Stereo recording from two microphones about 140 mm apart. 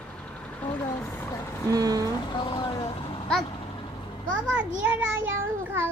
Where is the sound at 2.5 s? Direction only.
30° left (ahead or behind).